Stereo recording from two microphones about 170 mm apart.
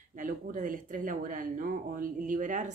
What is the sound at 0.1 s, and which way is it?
Speech, 50° right (ahead or behind).